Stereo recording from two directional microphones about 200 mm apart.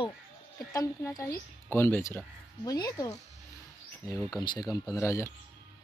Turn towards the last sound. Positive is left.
turn(degrees=15)  # may be behind; listen again after turning